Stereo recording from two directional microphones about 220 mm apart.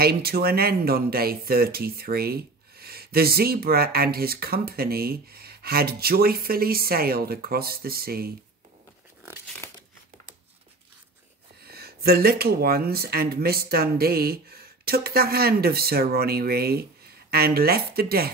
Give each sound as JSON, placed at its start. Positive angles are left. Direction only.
{"t": 0.0, "sound": "speech", "side_deg": -45}
{"t": 9.6, "sound": "crumpling", "side_deg": 10}
{"t": 11.6, "sound": "speech", "side_deg": -45}